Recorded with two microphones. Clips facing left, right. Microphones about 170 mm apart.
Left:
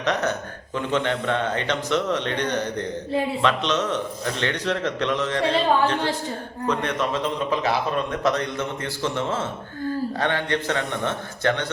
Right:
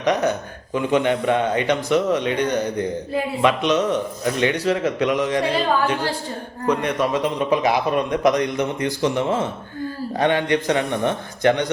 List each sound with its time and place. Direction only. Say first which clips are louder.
0.0 s speech: right 4 dB; 10° right (ahead or behind)